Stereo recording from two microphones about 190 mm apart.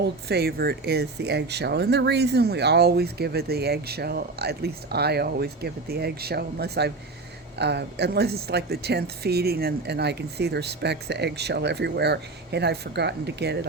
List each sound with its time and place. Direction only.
0.3 s speech: 55° right (ahead or behind)